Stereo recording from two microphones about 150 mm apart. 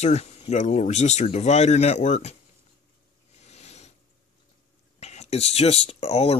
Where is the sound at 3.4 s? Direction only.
45° left (ahead or behind).